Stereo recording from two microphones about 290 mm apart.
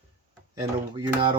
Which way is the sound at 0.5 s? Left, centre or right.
Centre.